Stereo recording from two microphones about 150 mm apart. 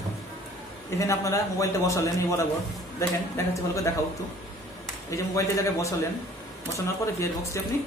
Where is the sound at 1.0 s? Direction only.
20° left (ahead or behind).